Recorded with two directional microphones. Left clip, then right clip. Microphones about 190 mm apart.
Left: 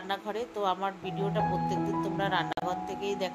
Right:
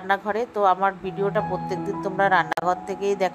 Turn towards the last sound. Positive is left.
turn(degrees=-35)  # may be behind; listen again after turning